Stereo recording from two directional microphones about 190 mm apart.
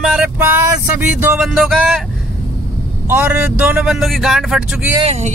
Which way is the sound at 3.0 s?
10° right (ahead or behind).